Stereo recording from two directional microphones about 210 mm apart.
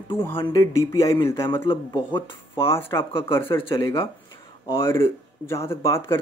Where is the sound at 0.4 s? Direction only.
25° left (ahead or behind).